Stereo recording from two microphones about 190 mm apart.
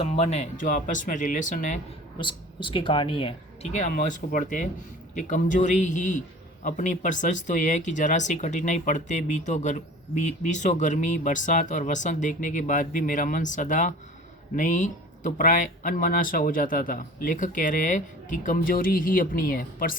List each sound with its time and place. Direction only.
0.0 s speech: 35° left (ahead or behind)
2.1 s speech: 25° left (ahead or behind); by 20.0 s 50° left (ahead or behind)